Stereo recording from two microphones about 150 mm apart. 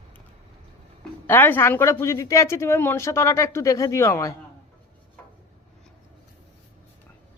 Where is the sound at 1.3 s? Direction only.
15° left (ahead or behind).